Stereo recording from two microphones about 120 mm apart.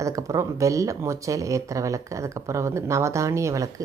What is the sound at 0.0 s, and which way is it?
Speech, 25° right (ahead or behind).